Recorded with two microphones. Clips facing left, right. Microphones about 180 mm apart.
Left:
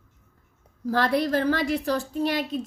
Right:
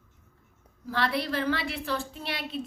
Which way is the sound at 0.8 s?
45° left (ahead or behind).